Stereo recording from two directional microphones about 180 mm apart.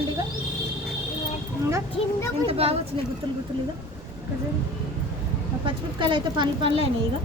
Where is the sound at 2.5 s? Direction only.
35° right (ahead or behind).